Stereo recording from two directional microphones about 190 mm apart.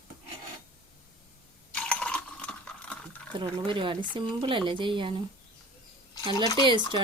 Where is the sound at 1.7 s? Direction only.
5° left (ahead or behind).